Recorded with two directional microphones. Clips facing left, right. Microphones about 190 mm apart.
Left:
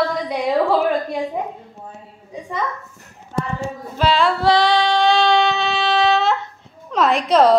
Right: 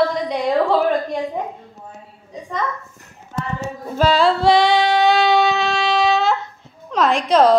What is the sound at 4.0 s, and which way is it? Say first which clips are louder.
Music: right 2 dB; 40° right (ahead or behind).